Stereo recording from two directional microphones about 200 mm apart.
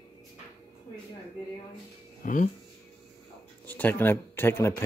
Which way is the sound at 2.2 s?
40° left (ahead or behind).